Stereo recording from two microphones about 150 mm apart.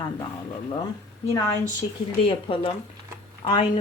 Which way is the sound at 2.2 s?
35° left (ahead or behind).